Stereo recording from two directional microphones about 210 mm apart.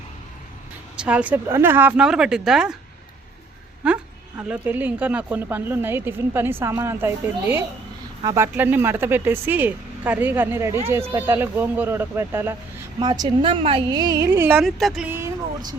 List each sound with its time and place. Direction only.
1.0 s speech: 5° right (ahead or behind)
3.8 s speech: 5° right (ahead or behind)
14.6 s speech: centre (ahead or behind)